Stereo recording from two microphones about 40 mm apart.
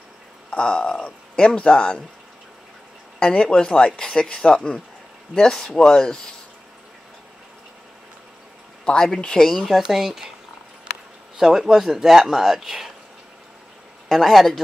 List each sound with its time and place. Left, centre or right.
0.5 s speech: left
3.2 s speech: left
8.8 s speech: centre
9.6 s speech: centre
11.3 s speech: centre
14.0 s a man's voice: centre